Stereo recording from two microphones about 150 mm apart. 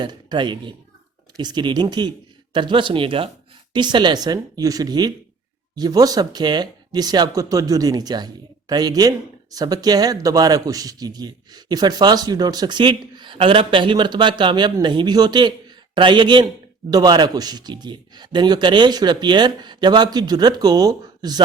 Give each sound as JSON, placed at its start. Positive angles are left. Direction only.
{"t": 0.0, "sound": "speech", "side_deg": -30}